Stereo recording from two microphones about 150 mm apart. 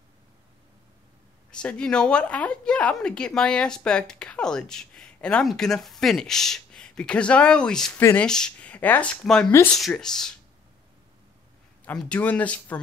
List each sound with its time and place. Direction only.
1.5 s a woman's voice: 5° left (ahead or behind)
8.0 s speech: 15° left (ahead or behind)
9.5 s speech: 15° left (ahead or behind)
9.8 s a woman's voice: centre (ahead or behind)
11.8 s speech: 5° left (ahead or behind)